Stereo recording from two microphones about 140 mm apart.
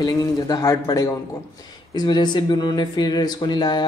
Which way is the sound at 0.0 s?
30° left (ahead or behind).